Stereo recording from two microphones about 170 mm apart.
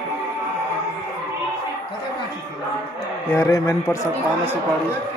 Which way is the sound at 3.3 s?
20° left (ahead or behind).